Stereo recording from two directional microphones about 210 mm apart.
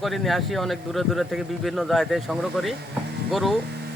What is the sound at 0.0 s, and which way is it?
Speech, centre (ahead or behind).